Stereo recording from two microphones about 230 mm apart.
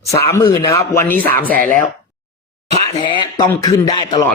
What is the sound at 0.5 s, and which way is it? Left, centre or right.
Speech, centre.